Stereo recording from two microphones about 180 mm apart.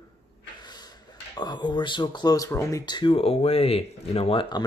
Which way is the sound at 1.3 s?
25° left (ahead or behind).